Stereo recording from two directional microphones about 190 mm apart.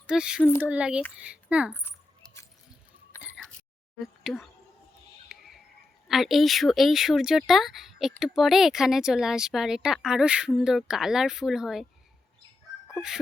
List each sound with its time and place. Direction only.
0.1 s speech: 5° right (ahead or behind)
0.4 s speech: 10° left (ahead or behind)
0.7 s a child's voice: 5° right (ahead or behind)
1.7 s keys jangling: 10° left (ahead or behind)
4.0 s speech: centre (ahead or behind)
5.3 s a sound: centre (ahead or behind)
6.1 s speech: centre (ahead or behind)